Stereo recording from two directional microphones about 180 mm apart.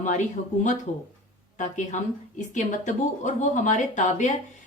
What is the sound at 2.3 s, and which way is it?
A woman's voice, 45° left (ahead or behind).